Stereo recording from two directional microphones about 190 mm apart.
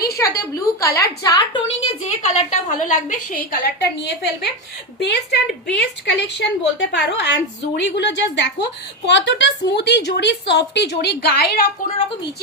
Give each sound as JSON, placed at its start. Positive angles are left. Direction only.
{"t": 0.0, "sound": "a woman's voice", "side_deg": 15}
{"t": 1.8, "sound": "a woman's voice", "side_deg": 35}